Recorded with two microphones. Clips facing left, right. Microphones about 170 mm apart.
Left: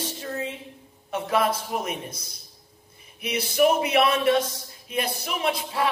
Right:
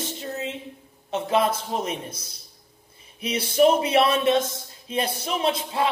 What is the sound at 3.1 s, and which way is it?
A man's voice, 30° right (ahead or behind).